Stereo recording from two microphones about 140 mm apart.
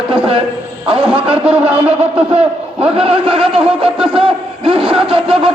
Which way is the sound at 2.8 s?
45° right (ahead or behind).